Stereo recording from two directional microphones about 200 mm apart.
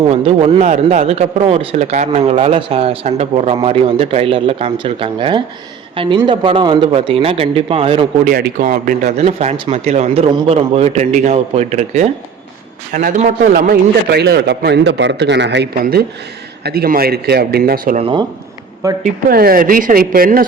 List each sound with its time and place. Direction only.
0.1 s a man's voice: 30° right (ahead or behind)
8.3 s a man's voice: 45° right (ahead or behind)
18.0 s a man's voice: 20° right (ahead or behind)
19.0 s a man's voice: 50° right (ahead or behind)